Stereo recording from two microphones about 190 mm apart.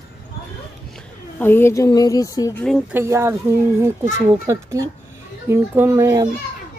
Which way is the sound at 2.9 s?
15° right (ahead or behind).